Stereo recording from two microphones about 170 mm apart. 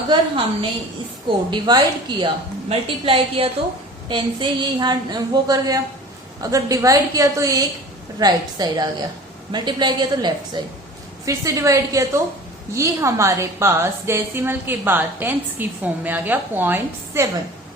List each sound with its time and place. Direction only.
0.1 s a woman's voice: 30° right (ahead or behind); by 17.2 s 10° right (ahead or behind)